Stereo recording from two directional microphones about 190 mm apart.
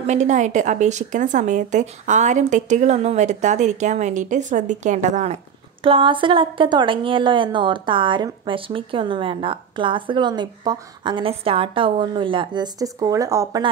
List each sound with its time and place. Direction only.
0.0 s a woman's voice: 40° right (ahead or behind); by 13.7 s 20° right (ahead or behind)